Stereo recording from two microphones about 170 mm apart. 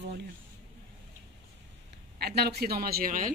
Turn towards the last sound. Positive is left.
turn(degrees=-55)  # may be behind; listen again after turning